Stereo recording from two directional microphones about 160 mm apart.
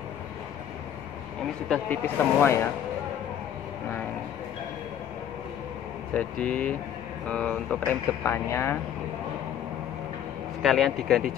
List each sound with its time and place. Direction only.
1.7 s speech: 10° left (ahead or behind)
6.1 s speech: 10° left (ahead or behind)
10.6 s speech: centre (ahead or behind)